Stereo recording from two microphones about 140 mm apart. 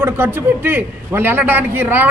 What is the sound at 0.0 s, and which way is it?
A man's voice, 15° right (ahead or behind).